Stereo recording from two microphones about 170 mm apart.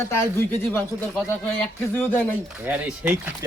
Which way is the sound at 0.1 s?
15° left (ahead or behind).